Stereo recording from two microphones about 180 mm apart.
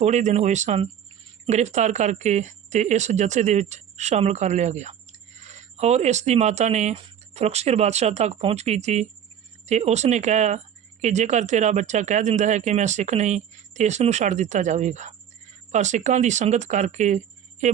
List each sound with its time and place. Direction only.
0.0 s speech: 40° right (ahead or behind)